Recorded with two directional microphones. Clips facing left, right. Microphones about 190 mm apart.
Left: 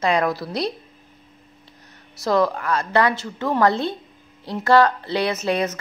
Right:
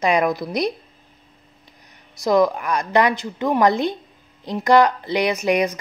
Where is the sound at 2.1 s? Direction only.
15° right (ahead or behind).